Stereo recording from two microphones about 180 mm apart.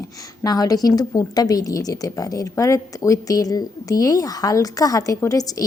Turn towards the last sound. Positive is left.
turn(degrees=20)  # may be behind; listen again after turning